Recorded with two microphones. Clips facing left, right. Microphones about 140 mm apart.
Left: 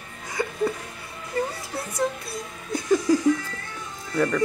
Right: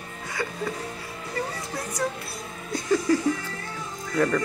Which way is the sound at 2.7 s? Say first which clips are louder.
Left 2 dB; 15° left (ahead or behind).